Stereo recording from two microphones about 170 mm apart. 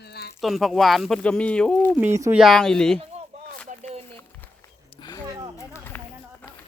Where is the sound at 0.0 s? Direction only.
75° left (ahead or behind).